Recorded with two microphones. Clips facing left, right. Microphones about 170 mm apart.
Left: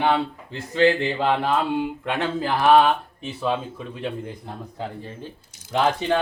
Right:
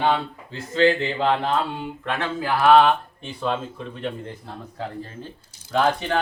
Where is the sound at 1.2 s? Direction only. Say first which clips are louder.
Even; 10° left (ahead or behind).